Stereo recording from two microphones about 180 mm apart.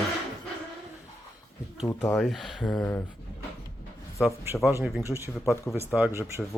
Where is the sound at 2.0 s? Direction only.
Centre (ahead or behind).